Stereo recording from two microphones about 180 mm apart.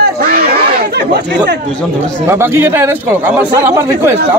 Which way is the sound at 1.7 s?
5° left (ahead or behind).